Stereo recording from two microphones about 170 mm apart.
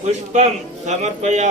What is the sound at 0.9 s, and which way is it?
Speech, 40° right (ahead or behind).